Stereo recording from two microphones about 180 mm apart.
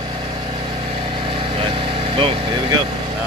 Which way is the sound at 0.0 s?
30° right (ahead or behind).